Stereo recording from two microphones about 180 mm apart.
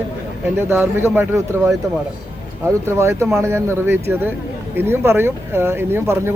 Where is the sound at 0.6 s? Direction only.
15° right (ahead or behind).